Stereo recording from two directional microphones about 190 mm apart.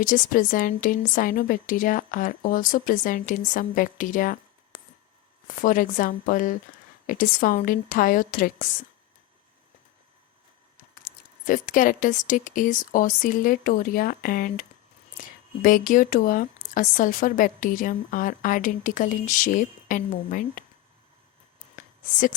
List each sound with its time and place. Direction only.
0.0 s speech: 45° left (ahead or behind)
11.0 s speech: 45° left (ahead or behind)
21.8 s a sound: 45° left (ahead or behind)